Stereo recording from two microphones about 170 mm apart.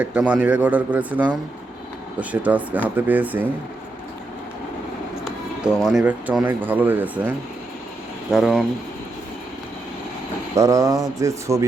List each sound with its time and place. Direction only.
0.0 s a man's voice: 10° right (ahead or behind)
5.8 s a man's voice: 5° right (ahead or behind)
10.5 s speech: 20° right (ahead or behind)